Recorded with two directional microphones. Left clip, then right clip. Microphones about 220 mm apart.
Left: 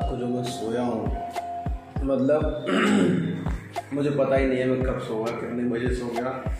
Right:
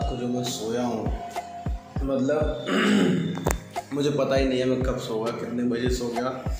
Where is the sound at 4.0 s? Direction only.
10° right (ahead or behind).